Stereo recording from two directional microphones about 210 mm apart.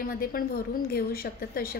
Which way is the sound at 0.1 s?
45° left (ahead or behind).